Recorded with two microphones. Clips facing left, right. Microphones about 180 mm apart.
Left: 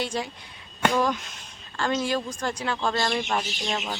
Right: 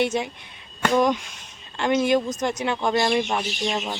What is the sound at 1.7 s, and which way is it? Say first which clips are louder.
A woman's voice: right 6 dB; 20° right (ahead or behind).